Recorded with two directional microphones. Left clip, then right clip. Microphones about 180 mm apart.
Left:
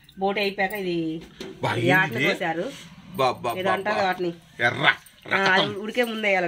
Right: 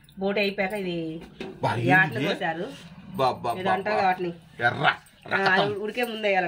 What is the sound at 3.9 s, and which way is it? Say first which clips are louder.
Speech: even; 50° left (ahead or behind).